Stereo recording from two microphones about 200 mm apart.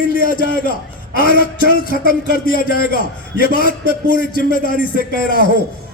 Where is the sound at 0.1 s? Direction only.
45° left (ahead or behind).